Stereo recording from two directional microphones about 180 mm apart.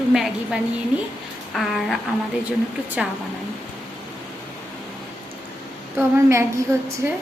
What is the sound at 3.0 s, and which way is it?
Speech, 5° right (ahead or behind).